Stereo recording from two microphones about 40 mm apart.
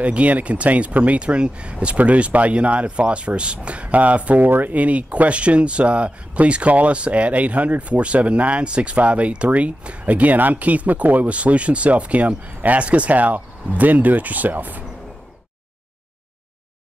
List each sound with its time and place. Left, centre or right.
0.0 s speech: right
4.5 s speech: right